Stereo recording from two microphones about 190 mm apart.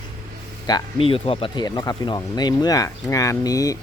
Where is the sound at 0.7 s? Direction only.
30° left (ahead or behind).